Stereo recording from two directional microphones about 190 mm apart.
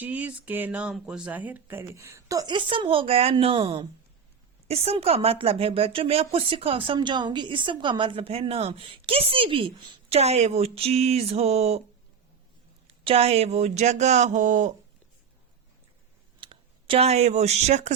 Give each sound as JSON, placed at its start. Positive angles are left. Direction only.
{"t": 0.0, "sound": "speech", "side_deg": -10}
{"t": 12.9, "sound": "speech", "side_deg": -30}
{"t": 16.4, "sound": "speech", "side_deg": -25}